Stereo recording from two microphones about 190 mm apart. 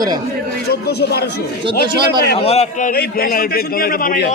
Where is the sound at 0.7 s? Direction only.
55° left (ahead or behind).